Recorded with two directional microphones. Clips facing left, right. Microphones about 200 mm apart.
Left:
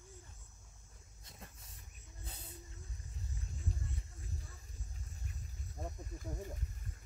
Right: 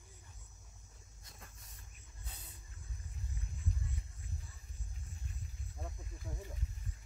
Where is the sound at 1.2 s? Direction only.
25° left (ahead or behind).